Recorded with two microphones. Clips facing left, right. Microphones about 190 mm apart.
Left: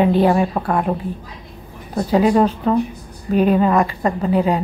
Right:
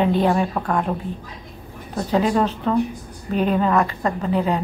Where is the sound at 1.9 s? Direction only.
10° left (ahead or behind).